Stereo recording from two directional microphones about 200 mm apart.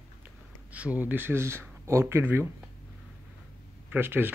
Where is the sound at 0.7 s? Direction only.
5° right (ahead or behind).